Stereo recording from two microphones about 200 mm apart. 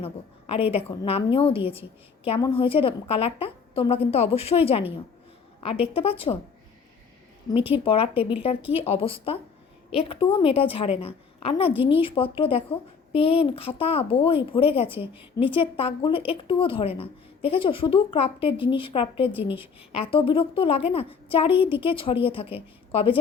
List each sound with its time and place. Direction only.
0.0 s a woman's voice: 30° left (ahead or behind)
7.9 s a woman's voice: 30° left (ahead or behind)